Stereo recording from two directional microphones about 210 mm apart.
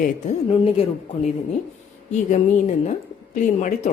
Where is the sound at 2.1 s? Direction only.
35° left (ahead or behind).